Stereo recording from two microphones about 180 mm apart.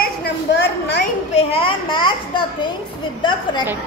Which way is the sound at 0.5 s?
80° left.